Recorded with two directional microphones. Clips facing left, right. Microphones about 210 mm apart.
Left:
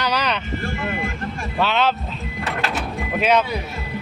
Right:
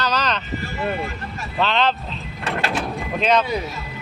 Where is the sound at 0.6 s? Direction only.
50° left (ahead or behind).